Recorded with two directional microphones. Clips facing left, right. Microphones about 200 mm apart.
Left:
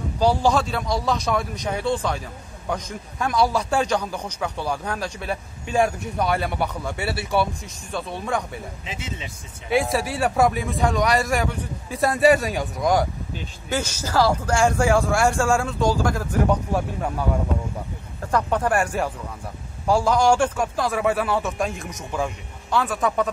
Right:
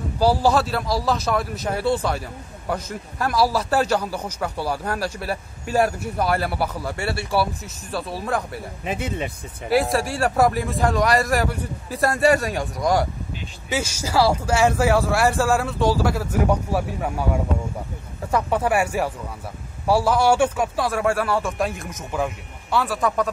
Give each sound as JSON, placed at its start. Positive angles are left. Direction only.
{"t": 0.2, "sound": "a man's voice", "side_deg": -5}
{"t": 8.8, "sound": "speech", "side_deg": -55}
{"t": 9.7, "sound": "a man's voice", "side_deg": 0}
{"t": 18.2, "sound": "a man's voice", "side_deg": -5}